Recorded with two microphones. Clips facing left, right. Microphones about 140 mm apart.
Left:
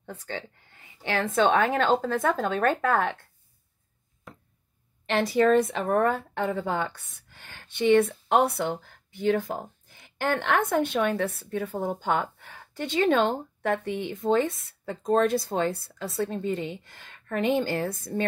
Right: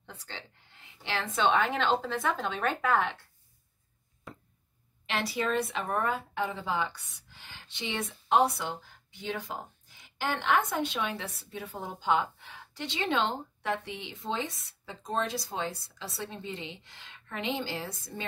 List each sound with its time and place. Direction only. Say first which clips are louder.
0.0 s a woman's voice: left 9 dB; 50° left (ahead or behind)
4.3 s a sound: right 1 dB; centre (ahead or behind)
5.1 s a woman's voice: left 9 dB; 45° left (ahead or behind)